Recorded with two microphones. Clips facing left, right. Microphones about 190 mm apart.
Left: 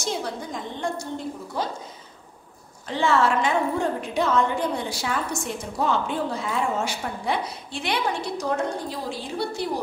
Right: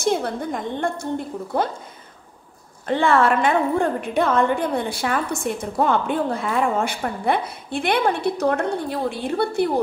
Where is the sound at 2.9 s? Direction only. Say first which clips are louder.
Right 4 dB; 55° right (ahead or behind).